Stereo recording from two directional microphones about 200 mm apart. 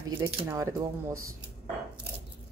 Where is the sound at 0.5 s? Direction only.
15° right (ahead or behind).